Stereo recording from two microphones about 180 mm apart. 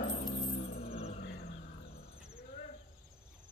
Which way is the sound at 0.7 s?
60° left (ahead or behind).